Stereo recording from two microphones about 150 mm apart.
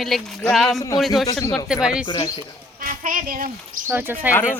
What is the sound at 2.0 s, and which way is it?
Speech, 30° left (ahead or behind).